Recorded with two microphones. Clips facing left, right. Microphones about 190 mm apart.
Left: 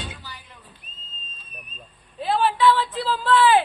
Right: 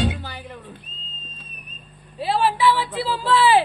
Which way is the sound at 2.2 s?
5° right (ahead or behind).